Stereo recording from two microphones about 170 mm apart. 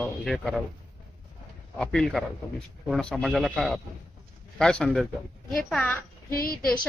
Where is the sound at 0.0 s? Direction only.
Centre (ahead or behind).